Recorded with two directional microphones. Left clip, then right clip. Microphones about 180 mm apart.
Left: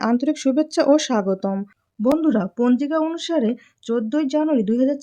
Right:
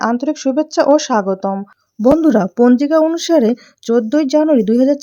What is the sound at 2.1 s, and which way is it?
Speech, 35° right (ahead or behind).